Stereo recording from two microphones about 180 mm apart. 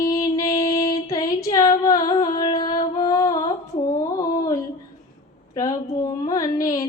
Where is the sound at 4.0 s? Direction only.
20° left (ahead or behind).